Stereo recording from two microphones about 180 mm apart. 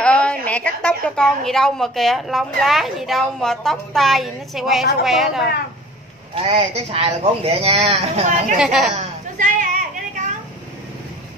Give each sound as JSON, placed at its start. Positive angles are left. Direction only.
{"t": 0.0, "sound": "a woman's voice", "side_deg": 5}
{"t": 6.3, "sound": "a man's voice", "side_deg": -35}
{"t": 8.5, "sound": "a woman's voice", "side_deg": 0}
{"t": 8.9, "sound": "a sound", "side_deg": -45}